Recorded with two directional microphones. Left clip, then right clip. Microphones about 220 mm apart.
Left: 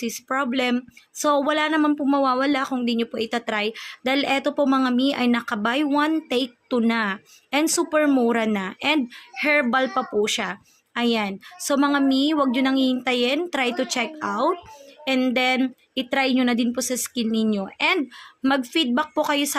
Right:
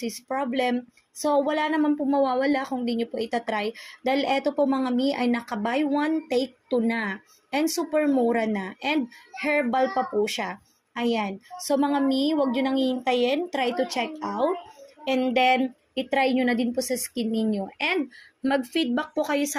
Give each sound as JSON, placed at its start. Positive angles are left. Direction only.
{"t": 0.0, "sound": "speech", "side_deg": 30}
{"t": 15.4, "sound": "a sound", "side_deg": 90}
{"t": 15.6, "sound": "speech", "side_deg": 30}